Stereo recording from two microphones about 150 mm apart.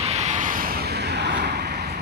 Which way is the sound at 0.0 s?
50° right (ahead or behind).